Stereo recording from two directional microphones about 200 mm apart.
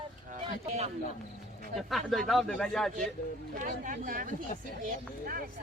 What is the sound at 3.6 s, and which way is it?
Speech, 40° right (ahead or behind).